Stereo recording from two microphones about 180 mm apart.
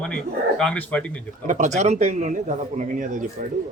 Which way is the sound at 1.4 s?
40° right (ahead or behind).